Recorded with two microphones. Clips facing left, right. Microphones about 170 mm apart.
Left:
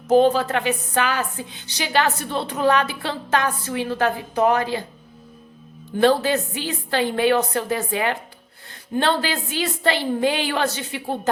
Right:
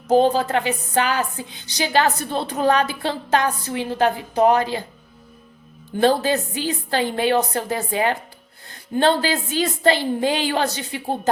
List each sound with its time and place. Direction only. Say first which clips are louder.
0.2 s a woman's voice: even; 35° right (ahead or behind)
6.0 s a woman's voice: even; 40° right (ahead or behind)